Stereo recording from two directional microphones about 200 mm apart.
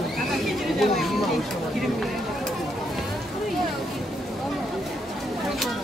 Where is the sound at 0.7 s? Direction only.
Centre (ahead or behind).